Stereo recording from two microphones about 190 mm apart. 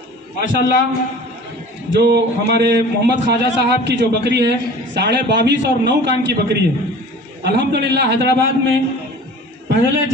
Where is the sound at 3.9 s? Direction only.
60° right (ahead or behind).